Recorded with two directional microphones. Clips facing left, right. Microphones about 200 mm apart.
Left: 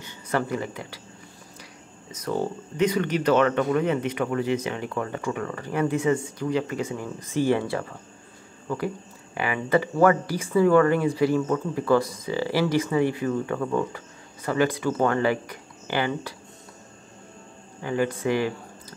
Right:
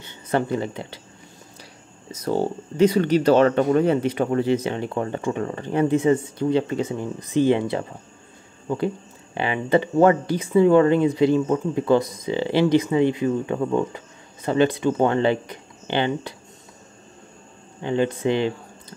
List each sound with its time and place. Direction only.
0.0 s speech: 25° right (ahead or behind)
2.0 s speech: 30° right (ahead or behind)
17.8 s speech: 25° right (ahead or behind)